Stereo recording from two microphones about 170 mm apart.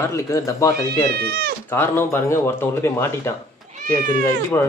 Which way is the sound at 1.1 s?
70° right (ahead or behind).